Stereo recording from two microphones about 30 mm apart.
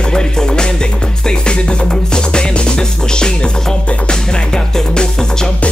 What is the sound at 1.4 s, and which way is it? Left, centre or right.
Music, left.